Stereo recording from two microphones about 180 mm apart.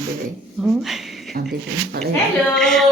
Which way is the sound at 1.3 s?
50° right (ahead or behind).